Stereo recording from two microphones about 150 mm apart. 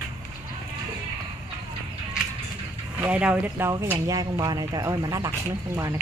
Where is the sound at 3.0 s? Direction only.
10° right (ahead or behind).